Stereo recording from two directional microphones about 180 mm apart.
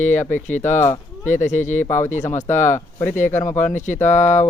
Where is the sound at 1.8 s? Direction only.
10° left (ahead or behind).